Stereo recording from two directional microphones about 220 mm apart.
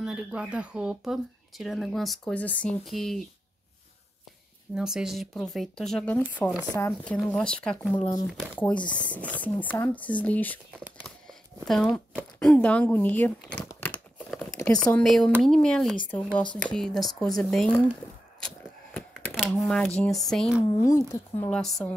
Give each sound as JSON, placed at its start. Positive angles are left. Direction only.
{"t": 0.0, "sound": "speech", "side_deg": -5}
{"t": 4.7, "sound": "speech", "side_deg": 0}
{"t": 8.1, "sound": "speech", "side_deg": 15}
{"t": 19.3, "sound": "a sound", "side_deg": 0}
{"t": 20.0, "sound": "speech", "side_deg": 0}
{"t": 20.8, "sound": "speech", "side_deg": 15}